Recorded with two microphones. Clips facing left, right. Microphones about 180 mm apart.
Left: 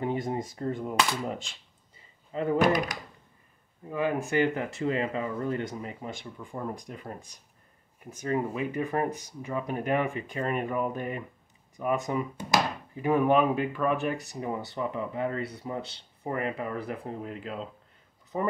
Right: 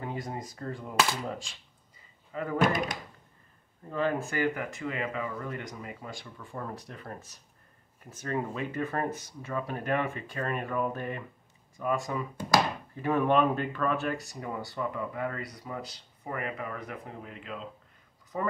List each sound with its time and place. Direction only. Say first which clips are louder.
0.0 s speech: left 6 dB; 25° left (ahead or behind)
2.3 s speech: left 5 dB; 25° left (ahead or behind)
2.7 s speech: left 3 dB; 25° right (ahead or behind)
3.9 s speech: left 3 dB; 15° left (ahead or behind); by 17.6 s 35° left (ahead or behind)
18.3 s speech: left 3 dB; 20° left (ahead or behind)